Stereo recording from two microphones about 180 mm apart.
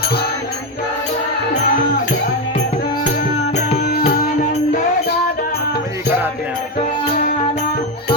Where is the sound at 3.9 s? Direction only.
55° left (ahead or behind).